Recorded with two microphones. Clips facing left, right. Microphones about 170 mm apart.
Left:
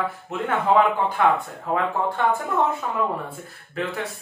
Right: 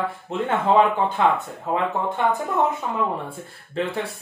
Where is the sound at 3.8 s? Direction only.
30° right (ahead or behind).